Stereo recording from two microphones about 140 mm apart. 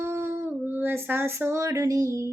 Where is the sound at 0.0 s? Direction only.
20° right (ahead or behind).